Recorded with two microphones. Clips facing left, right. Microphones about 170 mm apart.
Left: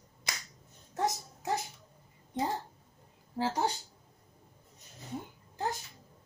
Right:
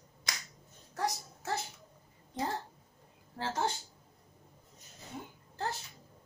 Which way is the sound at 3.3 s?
15° left (ahead or behind).